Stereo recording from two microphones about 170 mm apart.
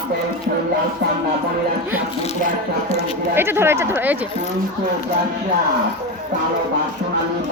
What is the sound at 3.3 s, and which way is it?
Speech, 15° right (ahead or behind).